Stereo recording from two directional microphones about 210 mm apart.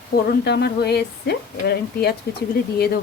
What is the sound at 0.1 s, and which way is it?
Speech, 45° left (ahead or behind).